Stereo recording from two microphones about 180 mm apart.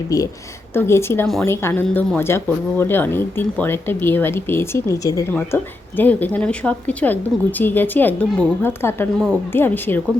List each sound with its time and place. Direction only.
0.1 s speech: 20° left (ahead or behind)